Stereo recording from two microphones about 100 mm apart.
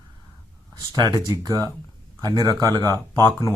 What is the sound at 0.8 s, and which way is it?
Speech, 45° right (ahead or behind).